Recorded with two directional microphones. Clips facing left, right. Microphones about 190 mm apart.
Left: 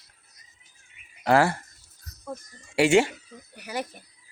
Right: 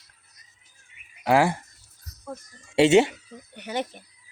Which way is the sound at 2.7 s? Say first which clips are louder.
Right 3 dB; 20° right (ahead or behind).